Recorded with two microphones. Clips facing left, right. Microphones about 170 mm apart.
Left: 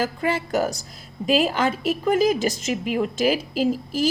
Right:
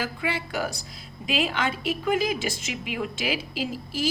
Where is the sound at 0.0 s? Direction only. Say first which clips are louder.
Left 6 dB; 45° left (ahead or behind).